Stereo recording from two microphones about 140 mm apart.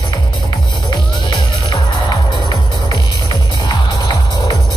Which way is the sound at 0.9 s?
30° left (ahead or behind).